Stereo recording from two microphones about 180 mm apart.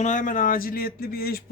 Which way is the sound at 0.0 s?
45° left (ahead or behind).